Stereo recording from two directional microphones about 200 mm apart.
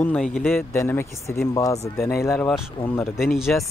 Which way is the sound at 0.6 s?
10° left (ahead or behind).